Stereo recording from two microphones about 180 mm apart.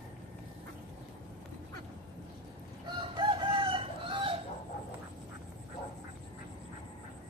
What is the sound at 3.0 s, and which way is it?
Chicken, 25° right (ahead or behind).